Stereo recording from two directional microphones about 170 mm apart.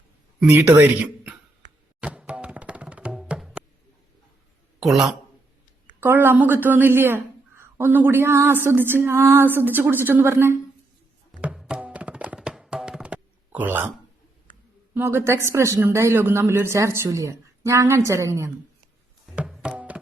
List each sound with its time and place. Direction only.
0.4 s speech: 15° right (ahead or behind)
2.0 s music: 5° right (ahead or behind)
4.8 s a man's voice: centre (ahead or behind)
6.0 s speech: 15° right (ahead or behind)
11.3 s music: 5° right (ahead or behind)
14.9 s speech: 15° right (ahead or behind)
19.3 s music: 5° right (ahead or behind)